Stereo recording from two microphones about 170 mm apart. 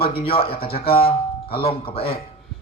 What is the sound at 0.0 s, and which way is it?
Speech, 35° left (ahead or behind).